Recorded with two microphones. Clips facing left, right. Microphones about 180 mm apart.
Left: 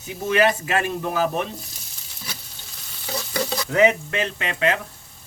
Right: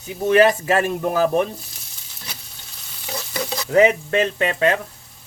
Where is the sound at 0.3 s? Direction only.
40° right (ahead or behind).